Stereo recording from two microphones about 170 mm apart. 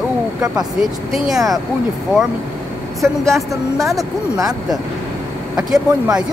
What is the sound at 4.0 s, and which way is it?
Speech, 20° right (ahead or behind).